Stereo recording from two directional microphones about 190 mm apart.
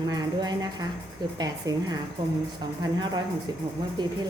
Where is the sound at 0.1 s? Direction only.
20° right (ahead or behind).